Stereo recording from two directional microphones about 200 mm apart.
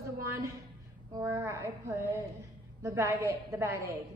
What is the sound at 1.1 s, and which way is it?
A woman's voice, 15° right (ahead or behind).